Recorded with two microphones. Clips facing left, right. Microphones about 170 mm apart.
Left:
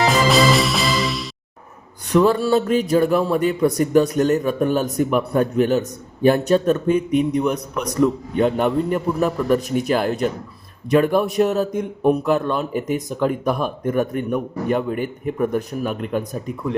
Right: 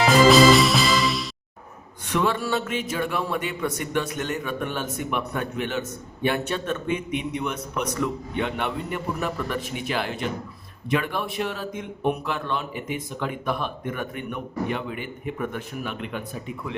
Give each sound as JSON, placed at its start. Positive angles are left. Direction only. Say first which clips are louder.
{"t": 0.0, "sound": "music", "louder": "right 1 dB", "side_deg": 0}
{"t": 2.0, "sound": "speech", "louder": "left 8 dB", "side_deg": 35}